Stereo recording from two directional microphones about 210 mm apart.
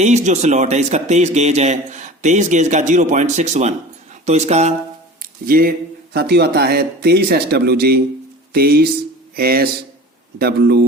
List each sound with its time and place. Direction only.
0.0 s a man's voice: 35° right (ahead or behind)
5.2 s a sound: 45° right (ahead or behind)
6.1 s speech: 50° right (ahead or behind)